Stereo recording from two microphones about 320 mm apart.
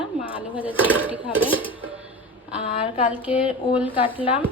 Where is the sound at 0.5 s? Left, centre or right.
Centre.